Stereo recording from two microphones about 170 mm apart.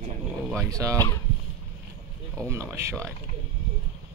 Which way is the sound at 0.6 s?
20° right (ahead or behind).